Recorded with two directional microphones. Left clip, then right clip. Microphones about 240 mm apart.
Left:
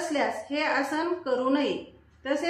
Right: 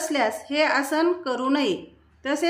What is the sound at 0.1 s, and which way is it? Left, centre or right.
A woman's voice, right.